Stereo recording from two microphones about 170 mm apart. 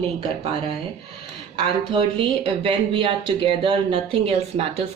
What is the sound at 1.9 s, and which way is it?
Speech, 30° right (ahead or behind).